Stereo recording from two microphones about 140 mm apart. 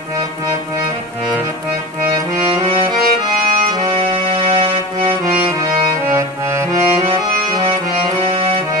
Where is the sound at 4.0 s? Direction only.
50° right (ahead or behind).